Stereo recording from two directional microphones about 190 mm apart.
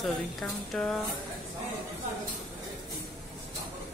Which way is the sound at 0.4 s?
Centre (ahead or behind).